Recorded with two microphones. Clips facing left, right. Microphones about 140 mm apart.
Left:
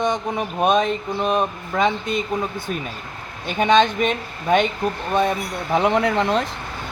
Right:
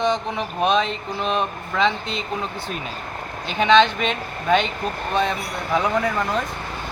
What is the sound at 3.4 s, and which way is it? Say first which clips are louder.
Speech: even; 45° left (ahead or behind).